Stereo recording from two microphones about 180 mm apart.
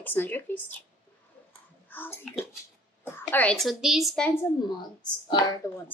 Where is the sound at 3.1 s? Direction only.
10° left (ahead or behind).